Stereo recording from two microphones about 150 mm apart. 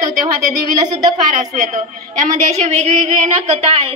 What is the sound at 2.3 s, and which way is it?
A woman's voice, 45° right (ahead or behind).